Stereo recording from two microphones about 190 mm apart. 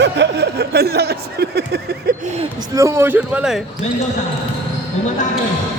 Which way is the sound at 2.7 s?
15° right (ahead or behind).